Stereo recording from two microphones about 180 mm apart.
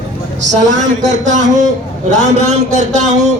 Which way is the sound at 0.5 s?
40° right (ahead or behind).